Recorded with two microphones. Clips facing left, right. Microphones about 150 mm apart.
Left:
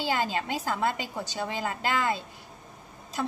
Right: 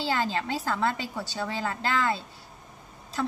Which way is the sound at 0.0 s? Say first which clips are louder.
Even; 15° left (ahead or behind).